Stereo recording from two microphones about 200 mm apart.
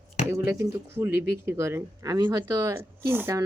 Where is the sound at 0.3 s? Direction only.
15° right (ahead or behind).